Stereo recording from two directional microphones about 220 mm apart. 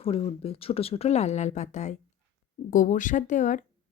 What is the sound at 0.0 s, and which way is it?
Speech, 25° left (ahead or behind).